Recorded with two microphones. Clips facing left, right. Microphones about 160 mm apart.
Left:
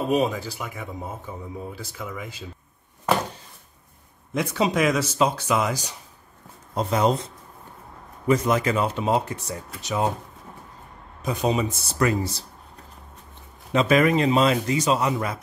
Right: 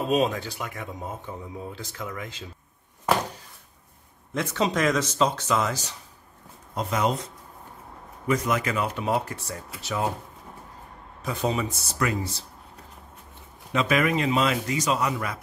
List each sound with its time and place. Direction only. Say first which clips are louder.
0.1 s speech: even; 5° left (ahead or behind)
4.3 s speech: left 2 dB; 10° left (ahead or behind)
6.7 s a man's voice: left 4 dB; 30° left (ahead or behind)
8.3 s speech: left 4 dB; 30° left (ahead or behind)
11.2 s speech: left 3 dB; 20° left (ahead or behind)
11.9 s a man's voice: left 5 dB; 35° left (ahead or behind)
13.7 s a man's voice: left 4 dB; 35° left (ahead or behind)